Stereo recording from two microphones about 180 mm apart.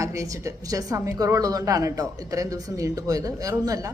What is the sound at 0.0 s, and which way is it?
A woman's voice, 20° right (ahead or behind).